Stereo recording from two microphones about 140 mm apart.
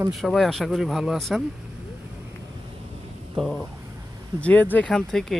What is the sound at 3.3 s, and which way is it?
Speech, 5° left (ahead or behind).